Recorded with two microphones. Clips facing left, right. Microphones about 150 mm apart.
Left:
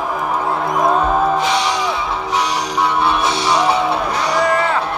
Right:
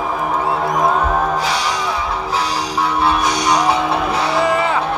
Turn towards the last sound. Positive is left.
turn(degrees=30)  # may be behind; listen again after turning